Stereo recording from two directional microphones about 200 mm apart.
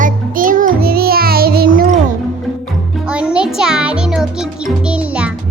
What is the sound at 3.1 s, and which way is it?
Music, 5° right (ahead or behind).